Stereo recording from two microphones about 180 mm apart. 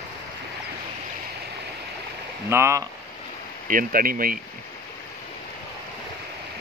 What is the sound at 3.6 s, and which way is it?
Speech, 50° right (ahead or behind).